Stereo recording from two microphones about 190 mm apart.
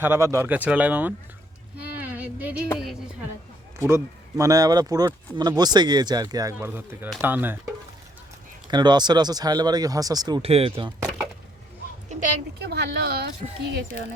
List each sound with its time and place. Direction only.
0.0 s speech: 15° right (ahead or behind)
2.0 s a sound: 10° right (ahead or behind)
3.8 s speech: 15° right (ahead or behind)
8.6 s speech: 25° right (ahead or behind)
12.6 s speech: 60° right (ahead or behind)